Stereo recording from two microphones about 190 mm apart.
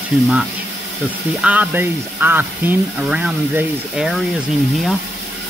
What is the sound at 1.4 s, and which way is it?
Speech, 10° right (ahead or behind).